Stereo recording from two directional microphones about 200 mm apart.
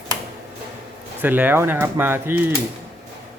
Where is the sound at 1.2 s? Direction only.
10° right (ahead or behind).